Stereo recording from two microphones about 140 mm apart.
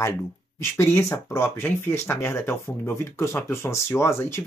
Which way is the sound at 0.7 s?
20° left (ahead or behind).